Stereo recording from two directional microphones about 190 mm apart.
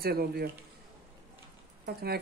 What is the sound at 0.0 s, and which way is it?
Speech, 55° right (ahead or behind).